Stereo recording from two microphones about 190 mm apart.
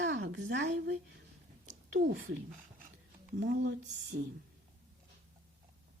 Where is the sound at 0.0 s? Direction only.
75° right (ahead or behind).